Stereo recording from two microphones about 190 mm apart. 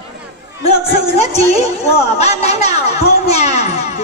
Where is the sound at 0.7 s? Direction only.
35° left (ahead or behind).